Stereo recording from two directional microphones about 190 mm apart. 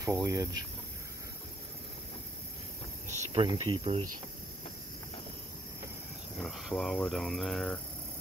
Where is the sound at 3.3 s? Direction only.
25° right (ahead or behind).